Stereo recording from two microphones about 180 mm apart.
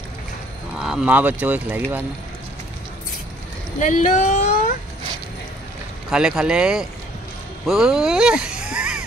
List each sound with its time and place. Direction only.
0.7 s speech: 5° right (ahead or behind)
3.8 s speech: 45° left (ahead or behind)
6.0 s speech: 5° right (ahead or behind)